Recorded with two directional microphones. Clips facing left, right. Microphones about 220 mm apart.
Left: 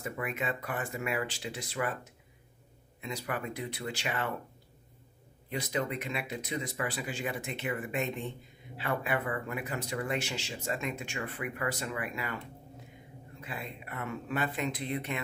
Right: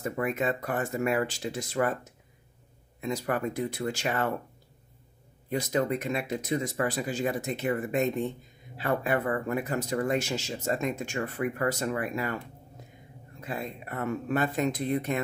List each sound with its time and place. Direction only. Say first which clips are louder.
0.0 s speech: right 7 dB; 40° right (ahead or behind)
3.0 s speech: right 7 dB; 45° right (ahead or behind)
5.5 s speech: right 6 dB; 45° right (ahead or behind)
13.4 s speech: right 7 dB; 40° right (ahead or behind)